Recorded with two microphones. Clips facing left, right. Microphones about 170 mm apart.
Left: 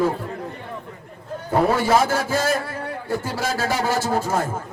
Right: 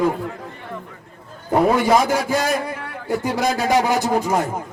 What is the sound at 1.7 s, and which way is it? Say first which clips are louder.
A man's voice: right 2 dB; 15° right (ahead or behind).